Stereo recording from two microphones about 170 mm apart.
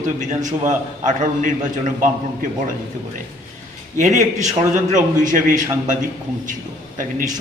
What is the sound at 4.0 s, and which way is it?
A man's voice, 45° right (ahead or behind).